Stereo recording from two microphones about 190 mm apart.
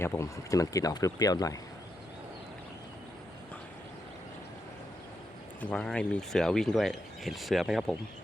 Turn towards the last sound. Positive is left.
turn(degrees=0)  # may be behind; listen again after turning